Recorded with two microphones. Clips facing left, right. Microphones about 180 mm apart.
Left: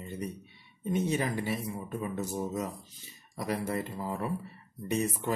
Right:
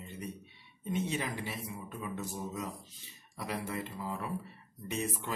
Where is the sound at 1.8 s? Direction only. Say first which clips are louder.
Left 6 dB; 45° left (ahead or behind).